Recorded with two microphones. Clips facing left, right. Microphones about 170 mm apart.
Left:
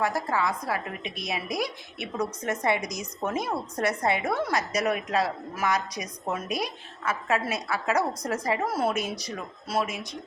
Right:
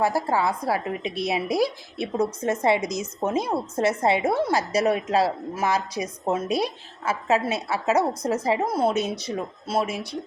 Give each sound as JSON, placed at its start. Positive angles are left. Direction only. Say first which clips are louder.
{"t": 0.0, "sound": "a woman's voice", "louder": "right 4 dB", "side_deg": -30}